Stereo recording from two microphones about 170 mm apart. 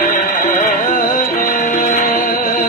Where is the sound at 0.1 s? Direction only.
50° left (ahead or behind).